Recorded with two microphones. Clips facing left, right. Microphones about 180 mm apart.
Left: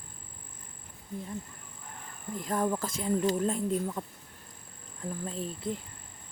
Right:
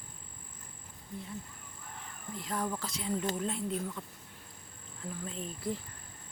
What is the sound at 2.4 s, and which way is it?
Speech, 50° left (ahead or behind).